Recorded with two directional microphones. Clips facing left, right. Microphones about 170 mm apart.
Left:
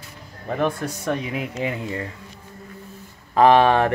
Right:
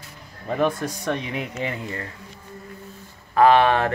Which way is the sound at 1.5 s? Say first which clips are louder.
Left 3 dB; 15° left (ahead or behind).